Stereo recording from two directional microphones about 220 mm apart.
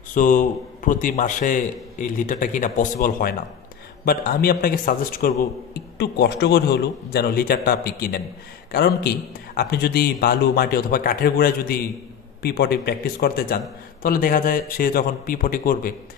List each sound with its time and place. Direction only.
0.1 s a man's voice: 35° left (ahead or behind)